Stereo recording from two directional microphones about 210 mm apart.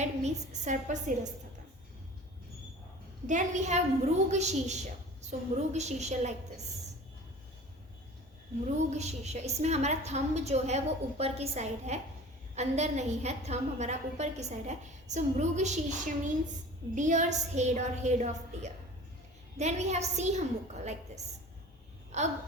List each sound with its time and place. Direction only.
0.0 s a woman's voice: 35° right (ahead or behind)
3.2 s a woman's voice: 35° right (ahead or behind)
8.6 s a woman's voice: 30° right (ahead or behind)
22.1 s babbling: 35° right (ahead or behind)